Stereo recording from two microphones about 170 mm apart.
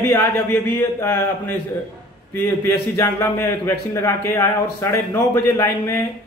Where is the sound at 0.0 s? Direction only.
10° left (ahead or behind).